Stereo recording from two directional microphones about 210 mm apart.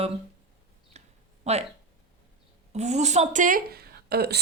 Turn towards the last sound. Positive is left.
turn(degrees=-50)  # may be behind; listen again after turning